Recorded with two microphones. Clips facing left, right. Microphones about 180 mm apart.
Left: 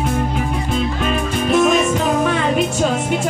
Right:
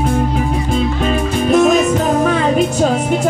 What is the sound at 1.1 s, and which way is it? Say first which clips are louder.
Music: right 4 dB; 40° right (ahead or behind).